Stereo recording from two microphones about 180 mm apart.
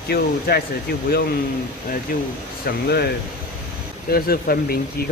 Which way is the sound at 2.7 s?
60° left (ahead or behind).